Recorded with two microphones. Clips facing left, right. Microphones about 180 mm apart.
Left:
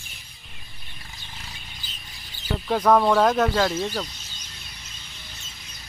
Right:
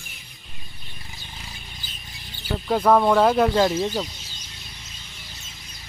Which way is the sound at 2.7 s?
5° right (ahead or behind).